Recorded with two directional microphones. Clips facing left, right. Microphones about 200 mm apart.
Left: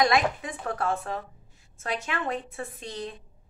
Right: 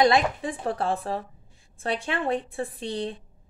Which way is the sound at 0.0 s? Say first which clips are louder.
Right 3 dB; 30° right (ahead or behind).